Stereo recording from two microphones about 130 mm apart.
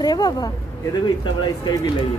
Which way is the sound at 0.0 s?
30° left (ahead or behind).